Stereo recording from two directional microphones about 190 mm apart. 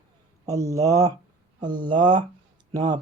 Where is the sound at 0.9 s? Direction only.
20° right (ahead or behind).